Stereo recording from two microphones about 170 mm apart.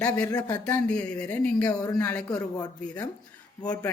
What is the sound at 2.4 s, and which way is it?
Speech, 20° left (ahead or behind).